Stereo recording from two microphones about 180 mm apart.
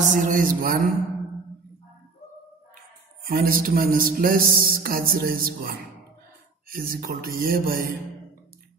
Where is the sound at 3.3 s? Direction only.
55° right (ahead or behind).